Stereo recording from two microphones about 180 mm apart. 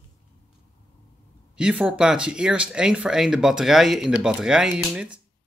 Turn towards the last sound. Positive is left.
turn(degrees=-5)  # may be behind; listen again after turning